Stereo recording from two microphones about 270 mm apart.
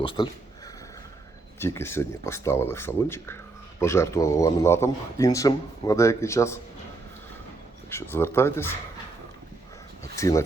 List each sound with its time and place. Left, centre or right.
0.0 s speech: centre
1.5 s speech: centre
7.9 s speech: centre
10.2 s speech: centre